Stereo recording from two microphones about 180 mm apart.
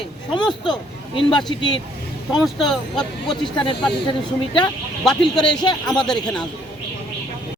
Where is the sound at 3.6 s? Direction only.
25° left (ahead or behind).